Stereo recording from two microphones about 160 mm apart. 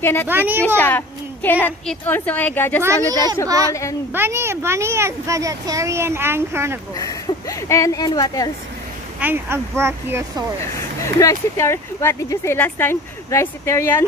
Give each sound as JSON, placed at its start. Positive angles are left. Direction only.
{"t": 0.0, "sound": "speech", "side_deg": 15}
{"t": 0.3, "sound": "a child's voice", "side_deg": -15}
{"t": 0.7, "sound": "speech", "side_deg": 10}
{"t": 2.8, "sound": "a child's voice", "side_deg": -20}
{"t": 7.0, "sound": "speech", "side_deg": 20}
{"t": 9.2, "sound": "a child's voice", "side_deg": -15}
{"t": 10.6, "sound": "speech", "side_deg": 20}